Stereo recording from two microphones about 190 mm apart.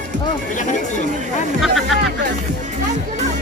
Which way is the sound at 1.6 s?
Centre (ahead or behind).